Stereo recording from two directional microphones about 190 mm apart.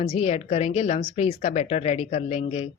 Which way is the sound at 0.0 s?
30° left (ahead or behind).